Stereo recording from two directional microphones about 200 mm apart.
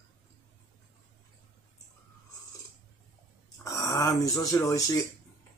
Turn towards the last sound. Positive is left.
turn(degrees=15)  # may be behind; listen again after turning